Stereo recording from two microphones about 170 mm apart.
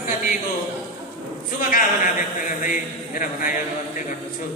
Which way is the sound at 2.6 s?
50° left (ahead or behind).